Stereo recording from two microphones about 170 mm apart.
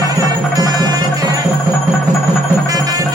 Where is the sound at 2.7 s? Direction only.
20° right (ahead or behind).